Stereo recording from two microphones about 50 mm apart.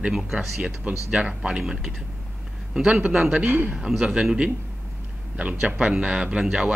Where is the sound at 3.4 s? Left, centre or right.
Right.